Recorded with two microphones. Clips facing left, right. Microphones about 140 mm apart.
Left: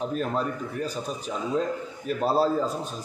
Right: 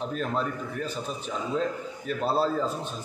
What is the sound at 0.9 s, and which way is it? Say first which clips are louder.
A man's voice: left 2 dB; 40° left (ahead or behind).